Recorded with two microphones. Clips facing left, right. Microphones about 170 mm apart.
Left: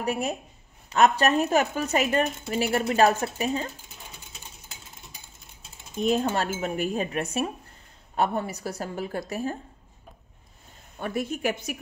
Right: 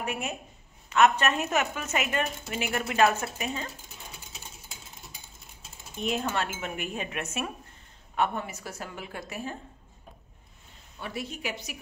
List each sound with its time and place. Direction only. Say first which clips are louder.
0.0 s a woman's voice: left 5 dB; 35° left (ahead or behind)
5.9 s a woman's voice: left 5 dB; 35° left (ahead or behind)
11.0 s a woman's voice: left 7 dB; 50° left (ahead or behind)